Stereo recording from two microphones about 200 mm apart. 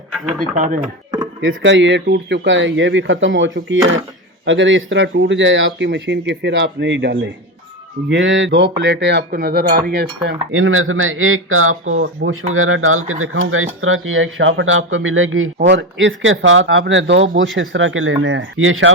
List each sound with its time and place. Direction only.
0.1 s speech: centre (ahead or behind)
0.5 s speech: 35° right (ahead or behind)
1.4 s speech: 70° right (ahead or behind)
10.5 s a man's voice: 90° right
15.5 s speech: 60° right (ahead or behind)